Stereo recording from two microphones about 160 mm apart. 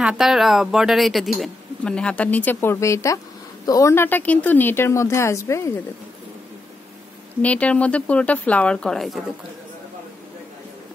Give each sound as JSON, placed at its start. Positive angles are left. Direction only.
{"t": 0.0, "sound": "a woman's voice", "side_deg": 0}
{"t": 7.4, "sound": "a woman's voice", "side_deg": 10}